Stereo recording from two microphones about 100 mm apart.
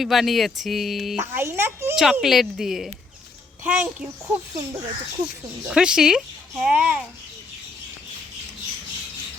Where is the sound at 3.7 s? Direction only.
15° right (ahead or behind).